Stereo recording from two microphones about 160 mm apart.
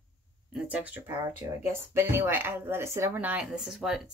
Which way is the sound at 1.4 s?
20° right (ahead or behind).